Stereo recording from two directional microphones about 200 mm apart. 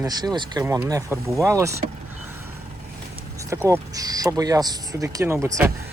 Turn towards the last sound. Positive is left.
turn(degrees=-15)  # may be behind; listen again after turning